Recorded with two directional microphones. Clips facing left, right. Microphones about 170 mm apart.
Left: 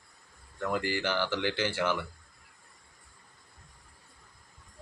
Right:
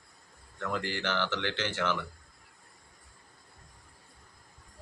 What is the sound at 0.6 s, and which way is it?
Speech, 10° left (ahead or behind).